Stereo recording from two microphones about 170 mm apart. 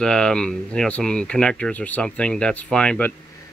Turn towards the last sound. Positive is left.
turn(degrees=5)  # may be behind; listen again after turning